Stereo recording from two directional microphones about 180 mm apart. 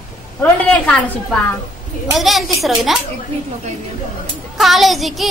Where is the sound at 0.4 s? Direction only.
5° left (ahead or behind).